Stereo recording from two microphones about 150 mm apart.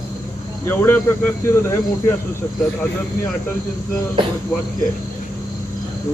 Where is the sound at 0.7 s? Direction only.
15° left (ahead or behind).